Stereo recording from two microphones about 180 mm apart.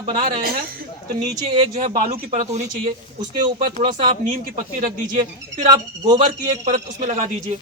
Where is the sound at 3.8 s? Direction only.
35° right (ahead or behind).